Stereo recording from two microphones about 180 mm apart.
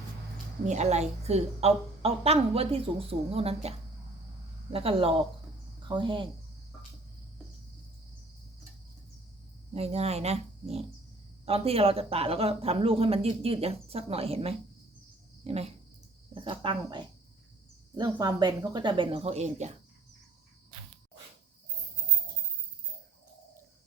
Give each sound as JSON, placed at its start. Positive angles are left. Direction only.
{"t": 0.6, "sound": "a woman's voice", "side_deg": -40}
{"t": 9.7, "sound": "a woman's voice", "side_deg": -35}